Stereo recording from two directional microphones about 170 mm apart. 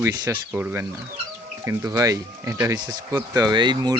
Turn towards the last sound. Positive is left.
turn(degrees=-25)  # may be behind; listen again after turning